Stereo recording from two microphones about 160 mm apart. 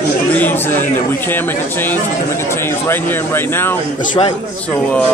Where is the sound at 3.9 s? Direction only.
30° left (ahead or behind).